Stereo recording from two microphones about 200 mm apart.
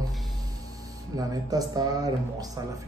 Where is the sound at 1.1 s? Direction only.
20° right (ahead or behind).